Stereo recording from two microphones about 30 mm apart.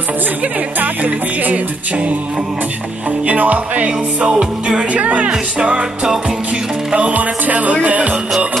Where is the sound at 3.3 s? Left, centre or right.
Right.